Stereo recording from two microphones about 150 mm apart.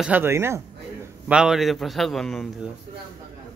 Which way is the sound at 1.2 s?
5° right (ahead or behind).